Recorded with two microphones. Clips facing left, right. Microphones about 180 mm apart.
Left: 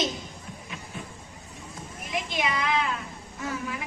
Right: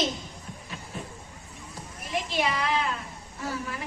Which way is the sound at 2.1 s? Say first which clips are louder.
Right 1 dB; 35° right (ahead or behind).